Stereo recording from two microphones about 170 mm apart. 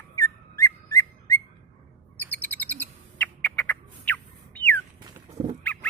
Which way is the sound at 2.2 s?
10° left (ahead or behind).